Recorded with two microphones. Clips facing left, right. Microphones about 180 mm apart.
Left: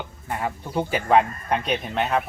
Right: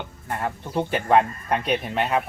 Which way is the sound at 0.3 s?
Centre (ahead or behind).